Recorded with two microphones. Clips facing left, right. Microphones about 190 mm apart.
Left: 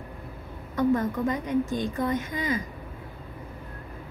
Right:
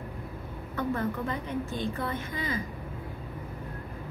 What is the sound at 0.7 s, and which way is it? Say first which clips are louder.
A woman's voice: left 6 dB; 15° left (ahead or behind).